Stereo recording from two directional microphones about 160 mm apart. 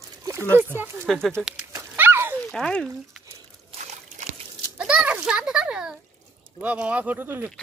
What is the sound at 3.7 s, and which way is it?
Trickle, 45° right (ahead or behind).